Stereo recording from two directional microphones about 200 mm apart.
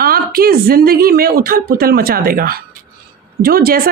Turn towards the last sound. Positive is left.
turn(degrees=-50)  # may be behind; listen again after turning